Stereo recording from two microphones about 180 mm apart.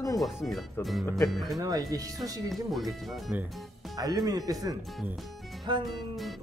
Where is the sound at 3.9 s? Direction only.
20° right (ahead or behind).